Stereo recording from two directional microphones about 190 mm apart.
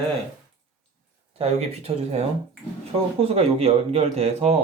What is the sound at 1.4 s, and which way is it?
Speech, 35° right (ahead or behind).